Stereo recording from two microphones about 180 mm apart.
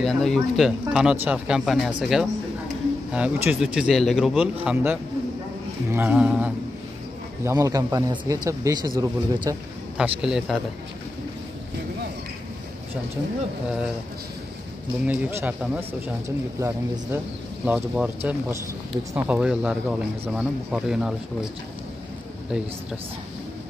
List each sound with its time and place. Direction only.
0.0 s speech: centre (ahead or behind)
5.9 s speech: 10° right (ahead or behind)
7.4 s speech: 20° right (ahead or behind)
9.9 s speech: 5° right (ahead or behind)
15.0 s speech: 10° right (ahead or behind)